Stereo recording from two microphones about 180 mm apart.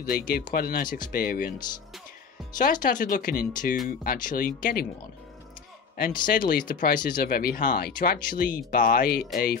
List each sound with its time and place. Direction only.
0.1 s speech: 50° left (ahead or behind)
2.5 s speech: 50° left (ahead or behind)
5.9 s speech: 50° left (ahead or behind)